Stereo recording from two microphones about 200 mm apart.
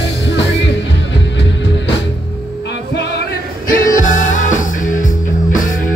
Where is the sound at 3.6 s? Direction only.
45° left (ahead or behind).